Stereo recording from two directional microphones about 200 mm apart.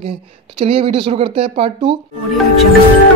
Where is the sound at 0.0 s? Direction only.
30° right (ahead or behind).